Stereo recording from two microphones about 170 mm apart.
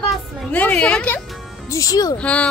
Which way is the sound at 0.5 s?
10° left (ahead or behind).